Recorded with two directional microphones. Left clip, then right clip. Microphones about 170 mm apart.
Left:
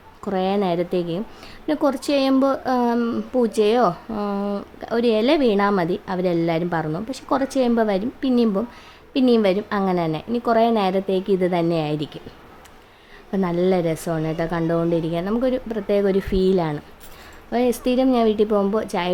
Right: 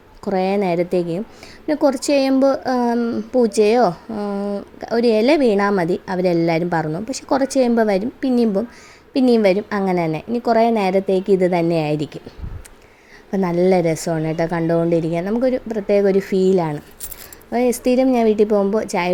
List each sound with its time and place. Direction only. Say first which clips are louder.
0.3 s a woman's voice: right 3 dB; 15° right (ahead or behind)
3.0 s speech: right 2 dB; 5° right (ahead or behind)
3.4 s a woman's voice: right 3 dB; 15° right (ahead or behind)
4.1 s speech: right 1 dB; centre (ahead or behind)
4.8 s a woman's voice: right 3 dB; 15° right (ahead or behind)
13.3 s a woman's voice: right 4 dB; 20° right (ahead or behind)